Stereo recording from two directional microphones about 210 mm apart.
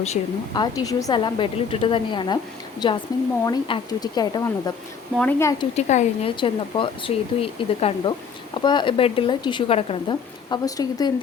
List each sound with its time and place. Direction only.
0.0 s speech: 25° left (ahead or behind)
5.1 s speech: 5° left (ahead or behind)
5.7 s speech: 30° left (ahead or behind)